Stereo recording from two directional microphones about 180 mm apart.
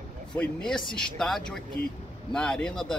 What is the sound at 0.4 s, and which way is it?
Speech, 5° left (ahead or behind).